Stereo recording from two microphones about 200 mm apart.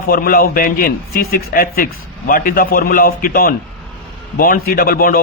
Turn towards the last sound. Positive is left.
turn(degrees=45)  # may be behind; listen again after turning